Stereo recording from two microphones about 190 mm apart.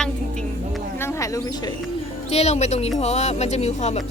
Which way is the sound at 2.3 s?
35° left (ahead or behind).